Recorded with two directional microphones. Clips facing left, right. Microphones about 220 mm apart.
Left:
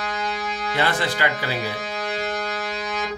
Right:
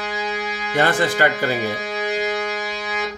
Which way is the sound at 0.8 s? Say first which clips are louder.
Right 6 dB; 50° right (ahead or behind).